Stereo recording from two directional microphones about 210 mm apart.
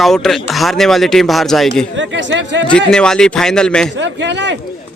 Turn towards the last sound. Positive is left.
turn(degrees=-55)  # may be behind; listen again after turning